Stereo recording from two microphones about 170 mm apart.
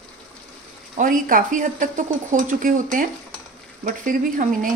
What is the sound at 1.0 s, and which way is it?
Speech, 50° right (ahead or behind).